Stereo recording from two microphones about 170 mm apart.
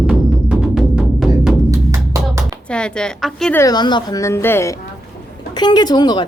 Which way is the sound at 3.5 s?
25° left (ahead or behind).